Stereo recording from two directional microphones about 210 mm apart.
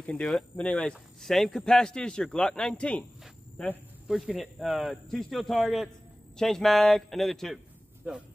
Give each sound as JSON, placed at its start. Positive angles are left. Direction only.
{"t": 0.0, "sound": "a man's voice", "side_deg": 5}